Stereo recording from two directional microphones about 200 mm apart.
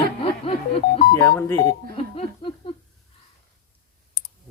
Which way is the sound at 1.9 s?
30° left (ahead or behind).